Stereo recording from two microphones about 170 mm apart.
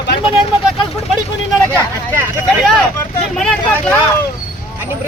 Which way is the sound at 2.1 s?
15° right (ahead or behind).